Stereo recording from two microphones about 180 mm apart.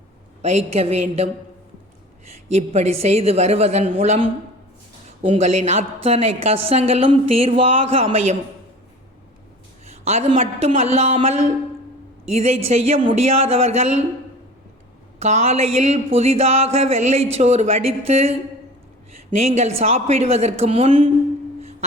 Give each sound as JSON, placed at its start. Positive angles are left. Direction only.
{"t": 0.4, "sound": "a woman's voice", "side_deg": -35}
{"t": 9.8, "sound": "a woman's voice", "side_deg": -35}
{"t": 15.2, "sound": "a woman's voice", "side_deg": -35}
{"t": 19.4, "sound": "a woman's voice", "side_deg": -35}
{"t": 21.6, "sound": "music", "side_deg": -35}